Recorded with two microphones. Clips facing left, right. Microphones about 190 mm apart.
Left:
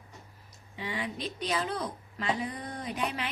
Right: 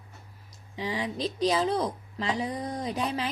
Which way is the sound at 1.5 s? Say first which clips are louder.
Right 6 dB; 30° right (ahead or behind).